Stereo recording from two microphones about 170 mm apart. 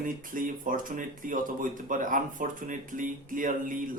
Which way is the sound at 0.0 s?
50° right (ahead or behind).